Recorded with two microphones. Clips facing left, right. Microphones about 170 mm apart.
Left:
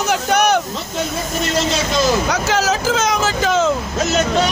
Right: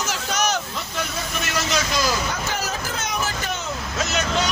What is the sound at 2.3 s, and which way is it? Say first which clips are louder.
Speech: left 9 dB; 90° left.